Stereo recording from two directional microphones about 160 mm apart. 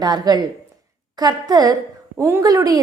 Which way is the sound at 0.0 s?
25° right (ahead or behind).